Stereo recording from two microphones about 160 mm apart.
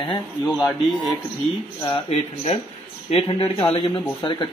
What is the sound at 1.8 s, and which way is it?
A man's voice, 35° left (ahead or behind).